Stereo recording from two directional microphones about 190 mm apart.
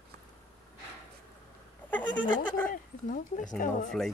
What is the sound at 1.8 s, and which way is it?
Goat, 10° left (ahead or behind).